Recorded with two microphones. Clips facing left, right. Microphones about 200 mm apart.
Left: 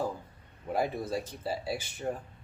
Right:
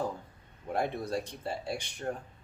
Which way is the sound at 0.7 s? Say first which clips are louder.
Left 1 dB; 5° left (ahead or behind).